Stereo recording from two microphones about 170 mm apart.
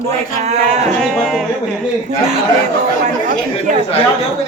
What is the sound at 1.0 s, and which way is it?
Speech, 5° left (ahead or behind).